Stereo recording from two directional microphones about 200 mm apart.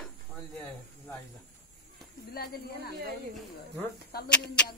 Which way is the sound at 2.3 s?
50° left (ahead or behind).